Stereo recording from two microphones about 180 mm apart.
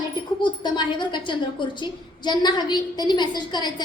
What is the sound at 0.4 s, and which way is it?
A woman's voice, 25° left (ahead or behind).